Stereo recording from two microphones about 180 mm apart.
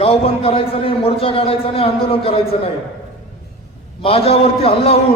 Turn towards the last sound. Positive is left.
turn(degrees=35)  # may be behind; listen again after turning